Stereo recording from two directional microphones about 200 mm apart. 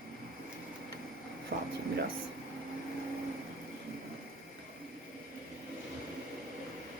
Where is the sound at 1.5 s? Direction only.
55° right (ahead or behind).